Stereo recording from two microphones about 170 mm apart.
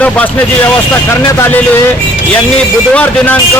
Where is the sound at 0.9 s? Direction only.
15° left (ahead or behind).